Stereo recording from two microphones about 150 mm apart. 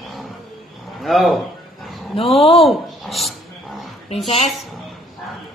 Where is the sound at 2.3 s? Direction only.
40° left (ahead or behind).